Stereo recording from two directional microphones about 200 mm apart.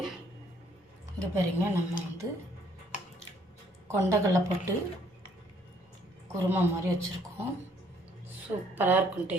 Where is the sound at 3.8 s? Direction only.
15° right (ahead or behind).